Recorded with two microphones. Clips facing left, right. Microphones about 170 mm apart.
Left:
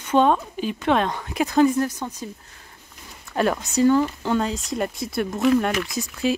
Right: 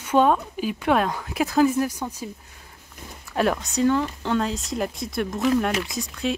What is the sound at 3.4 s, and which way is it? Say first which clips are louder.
Speech: left 2 dB; centre (ahead or behind).